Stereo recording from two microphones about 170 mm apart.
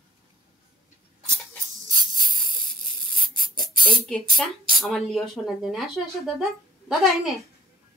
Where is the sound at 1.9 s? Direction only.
25° right (ahead or behind).